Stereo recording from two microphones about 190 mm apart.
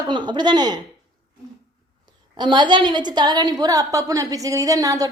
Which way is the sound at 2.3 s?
25° right (ahead or behind).